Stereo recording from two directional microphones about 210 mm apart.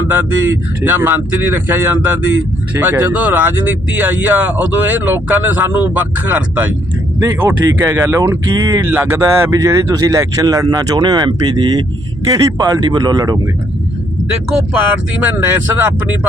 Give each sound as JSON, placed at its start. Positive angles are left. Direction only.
{"t": 0.9, "sound": "speech", "side_deg": -10}
{"t": 7.2, "sound": "speech", "side_deg": -10}
{"t": 14.3, "sound": "speech", "side_deg": -5}